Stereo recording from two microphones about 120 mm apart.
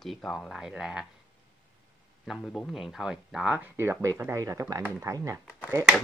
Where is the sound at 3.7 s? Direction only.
20° right (ahead or behind).